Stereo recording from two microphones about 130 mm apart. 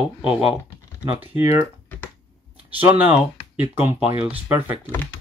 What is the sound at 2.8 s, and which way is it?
Speech, 15° right (ahead or behind).